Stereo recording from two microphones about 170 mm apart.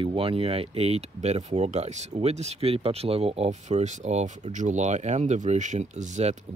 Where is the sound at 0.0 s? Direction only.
30° right (ahead or behind).